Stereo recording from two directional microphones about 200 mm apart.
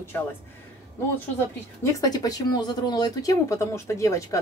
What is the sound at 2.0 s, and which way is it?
A woman's voice, 20° left (ahead or behind).